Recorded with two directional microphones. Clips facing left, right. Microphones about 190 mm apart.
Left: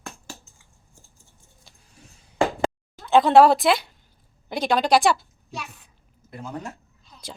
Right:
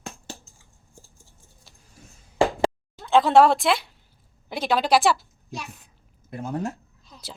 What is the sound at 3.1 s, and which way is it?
Speech, centre (ahead or behind).